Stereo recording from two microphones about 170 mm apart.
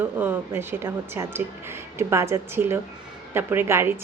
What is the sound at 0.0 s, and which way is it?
A woman's voice, 10° right (ahead or behind).